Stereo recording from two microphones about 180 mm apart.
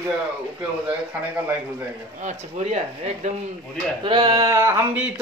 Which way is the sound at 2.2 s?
40° right (ahead or behind).